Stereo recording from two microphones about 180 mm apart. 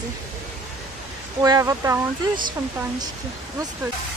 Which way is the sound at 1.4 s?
20° right (ahead or behind).